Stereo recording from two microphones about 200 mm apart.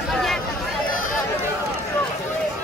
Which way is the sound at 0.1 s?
Centre (ahead or behind).